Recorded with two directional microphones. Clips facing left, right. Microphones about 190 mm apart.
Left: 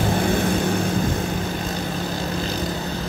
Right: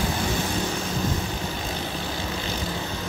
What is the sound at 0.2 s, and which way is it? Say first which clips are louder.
Vehicle: left 6 dB; 55° left (ahead or behind).